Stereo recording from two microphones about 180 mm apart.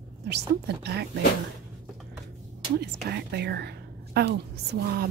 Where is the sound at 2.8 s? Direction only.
65° right (ahead or behind).